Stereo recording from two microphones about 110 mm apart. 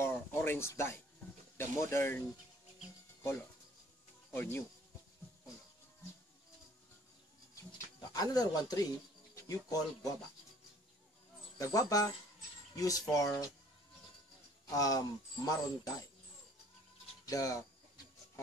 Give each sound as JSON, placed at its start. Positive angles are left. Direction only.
{"t": 0.0, "sound": "a sound", "side_deg": 20}
{"t": 1.6, "sound": "speech", "side_deg": 20}
{"t": 4.3, "sound": "speech", "side_deg": 20}
{"t": 8.1, "sound": "speech", "side_deg": 35}
{"t": 11.5, "sound": "speech", "side_deg": 35}
{"t": 14.7, "sound": "speech", "side_deg": 35}
{"t": 17.3, "sound": "speech", "side_deg": 30}